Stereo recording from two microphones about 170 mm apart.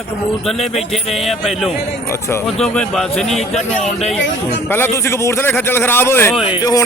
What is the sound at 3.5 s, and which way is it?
Speech, 40° left (ahead or behind).